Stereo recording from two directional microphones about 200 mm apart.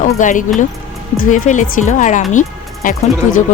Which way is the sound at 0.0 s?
40° left (ahead or behind).